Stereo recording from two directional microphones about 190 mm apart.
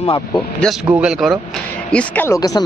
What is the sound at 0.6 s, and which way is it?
Speech, centre (ahead or behind).